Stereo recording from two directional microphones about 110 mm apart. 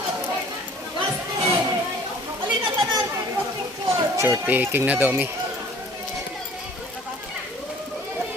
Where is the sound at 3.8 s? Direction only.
25° right (ahead or behind).